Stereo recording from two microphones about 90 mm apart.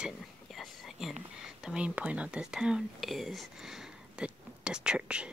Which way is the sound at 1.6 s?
15° right (ahead or behind).